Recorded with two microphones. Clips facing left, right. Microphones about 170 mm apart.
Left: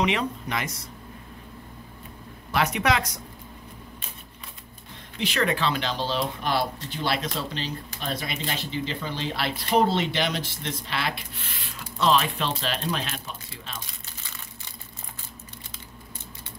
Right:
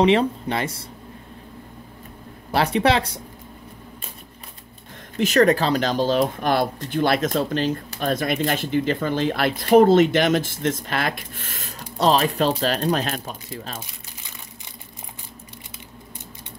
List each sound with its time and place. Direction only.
0.0 s speech: 30° right (ahead or behind)
2.5 s speech: 30° right (ahead or behind)
5.1 s speech: 45° right (ahead or behind)
14.2 s crumpling: 15° right (ahead or behind)